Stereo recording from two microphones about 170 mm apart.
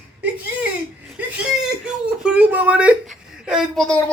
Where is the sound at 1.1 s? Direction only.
5° right (ahead or behind).